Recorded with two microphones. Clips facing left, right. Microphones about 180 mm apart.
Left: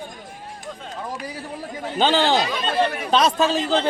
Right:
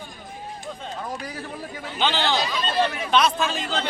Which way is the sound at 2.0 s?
45° left (ahead or behind).